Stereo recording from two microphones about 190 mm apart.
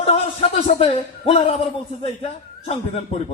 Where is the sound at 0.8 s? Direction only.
30° left (ahead or behind).